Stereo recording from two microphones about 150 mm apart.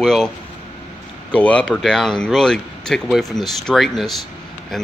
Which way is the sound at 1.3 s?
10° left (ahead or behind).